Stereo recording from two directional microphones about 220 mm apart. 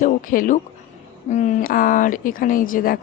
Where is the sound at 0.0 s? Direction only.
40° left (ahead or behind).